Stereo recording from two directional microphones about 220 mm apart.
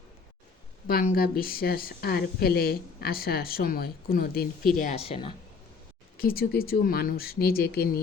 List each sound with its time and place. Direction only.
0.9 s a woman's voice: 40° left (ahead or behind)
4.8 s speech: 30° left (ahead or behind)
6.1 s a woman's voice: 45° left (ahead or behind)